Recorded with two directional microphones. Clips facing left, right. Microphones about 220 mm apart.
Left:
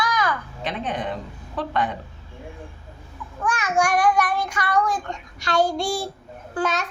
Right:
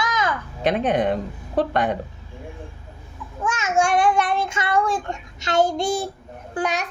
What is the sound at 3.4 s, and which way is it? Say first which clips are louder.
A child's voice: right 1 dB; 20° right (ahead or behind).